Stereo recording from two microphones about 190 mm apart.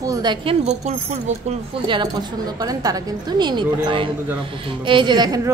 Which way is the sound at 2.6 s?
20° right (ahead or behind).